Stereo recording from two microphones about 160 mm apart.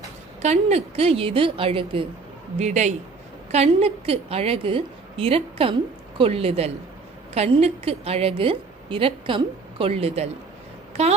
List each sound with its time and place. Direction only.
0.4 s a woman's voice: 40° right (ahead or behind)
2.6 s a man's voice: 45° right (ahead or behind)